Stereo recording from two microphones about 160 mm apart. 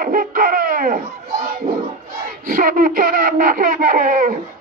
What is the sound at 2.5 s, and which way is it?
Speech, 60° right (ahead or behind).